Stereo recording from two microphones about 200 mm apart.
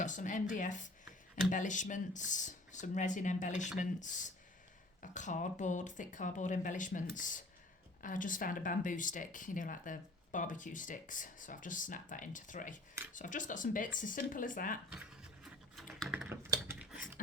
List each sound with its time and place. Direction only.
0.0 s speech: 40° left (ahead or behind)
15.4 s typing: centre (ahead or behind)